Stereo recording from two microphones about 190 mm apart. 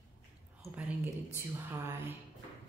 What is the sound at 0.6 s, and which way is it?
Speech, 10° right (ahead or behind).